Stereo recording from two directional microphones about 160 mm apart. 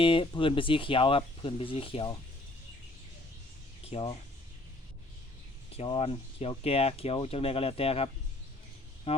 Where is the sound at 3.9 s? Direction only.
35° left (ahead or behind).